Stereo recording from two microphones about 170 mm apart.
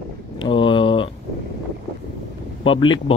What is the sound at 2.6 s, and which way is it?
Speech, 30° left (ahead or behind).